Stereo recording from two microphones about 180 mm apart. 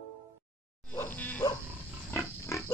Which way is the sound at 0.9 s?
10° left (ahead or behind).